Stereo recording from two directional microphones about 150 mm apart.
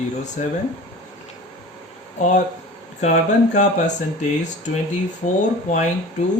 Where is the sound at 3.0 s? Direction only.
50° left (ahead or behind).